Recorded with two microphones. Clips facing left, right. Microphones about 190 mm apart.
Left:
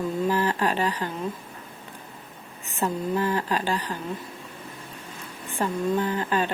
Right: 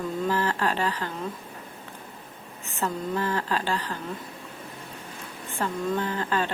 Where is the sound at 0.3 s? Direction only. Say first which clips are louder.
Left 1 dB; 15° left (ahead or behind).